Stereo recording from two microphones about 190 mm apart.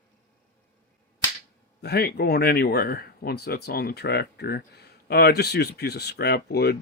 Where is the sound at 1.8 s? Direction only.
55° left (ahead or behind).